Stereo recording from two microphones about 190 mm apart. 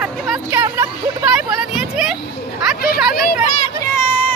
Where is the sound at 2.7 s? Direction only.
55° left (ahead or behind).